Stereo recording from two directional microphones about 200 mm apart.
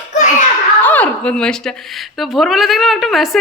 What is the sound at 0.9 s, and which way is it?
A woman's voice, 10° left (ahead or behind).